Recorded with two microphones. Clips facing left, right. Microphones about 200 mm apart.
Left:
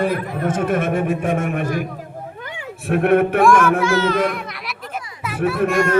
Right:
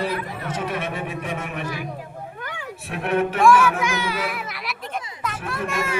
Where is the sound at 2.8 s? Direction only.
55° left (ahead or behind).